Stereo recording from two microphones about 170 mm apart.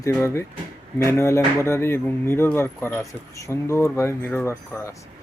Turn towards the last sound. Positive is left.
turn(degrees=15)  # may be behind; listen again after turning